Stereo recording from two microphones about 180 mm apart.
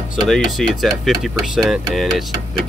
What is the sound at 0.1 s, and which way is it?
Speech, centre (ahead or behind).